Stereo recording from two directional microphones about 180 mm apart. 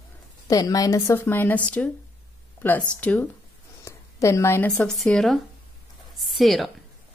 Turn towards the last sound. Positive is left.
turn(degrees=0)  # may be behind; listen again after turning